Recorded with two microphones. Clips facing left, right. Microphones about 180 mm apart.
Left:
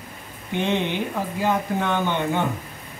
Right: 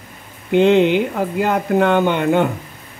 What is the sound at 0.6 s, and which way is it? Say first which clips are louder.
Speech: right 9 dB; 70° right (ahead or behind).